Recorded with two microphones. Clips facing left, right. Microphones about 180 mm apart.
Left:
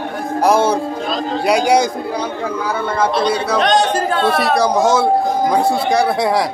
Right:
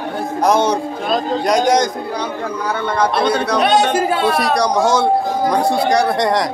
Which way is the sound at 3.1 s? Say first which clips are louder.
Even; 55° right (ahead or behind).